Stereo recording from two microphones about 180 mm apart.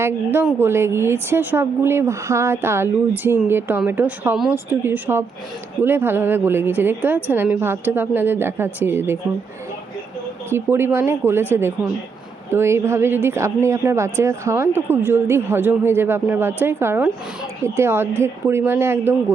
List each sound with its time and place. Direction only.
0.0 s speech: 10° right (ahead or behind)
10.5 s speech: 15° right (ahead or behind)